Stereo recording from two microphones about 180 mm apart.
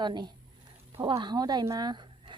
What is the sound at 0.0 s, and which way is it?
Speech, 25° right (ahead or behind).